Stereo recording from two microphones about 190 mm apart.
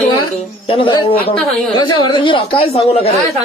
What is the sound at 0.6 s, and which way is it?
A man's voice, 25° left (ahead or behind).